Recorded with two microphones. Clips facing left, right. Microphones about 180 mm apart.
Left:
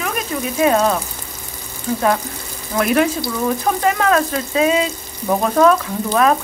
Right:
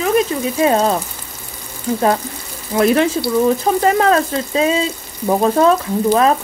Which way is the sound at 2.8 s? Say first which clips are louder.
Right 3 dB; 30° right (ahead or behind).